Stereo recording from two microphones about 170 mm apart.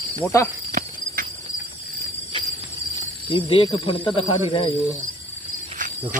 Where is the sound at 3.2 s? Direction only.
30° left (ahead or behind).